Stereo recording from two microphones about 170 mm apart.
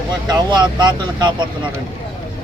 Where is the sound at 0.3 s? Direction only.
25° right (ahead or behind).